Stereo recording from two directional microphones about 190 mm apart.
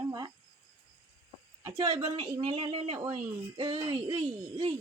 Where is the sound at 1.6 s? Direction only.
25° right (ahead or behind).